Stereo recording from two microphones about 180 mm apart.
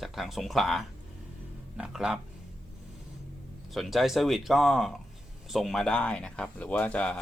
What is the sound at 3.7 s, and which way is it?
Speech, centre (ahead or behind).